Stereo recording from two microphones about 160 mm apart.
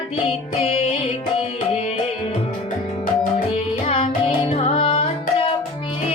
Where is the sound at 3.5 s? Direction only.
40° left (ahead or behind).